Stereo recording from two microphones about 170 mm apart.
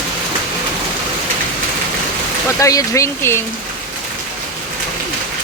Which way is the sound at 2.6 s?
20° left (ahead or behind).